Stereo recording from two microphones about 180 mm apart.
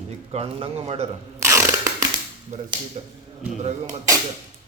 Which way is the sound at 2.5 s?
40° right (ahead or behind).